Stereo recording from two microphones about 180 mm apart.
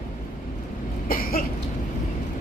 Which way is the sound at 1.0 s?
55° left (ahead or behind).